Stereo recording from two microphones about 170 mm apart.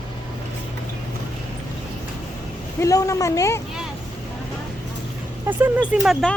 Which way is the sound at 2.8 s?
20° left (ahead or behind).